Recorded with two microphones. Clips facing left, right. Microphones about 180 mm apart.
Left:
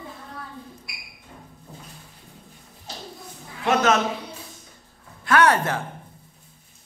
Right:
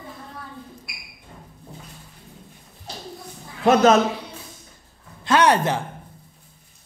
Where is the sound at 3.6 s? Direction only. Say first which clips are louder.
Right 5 dB; 35° right (ahead or behind).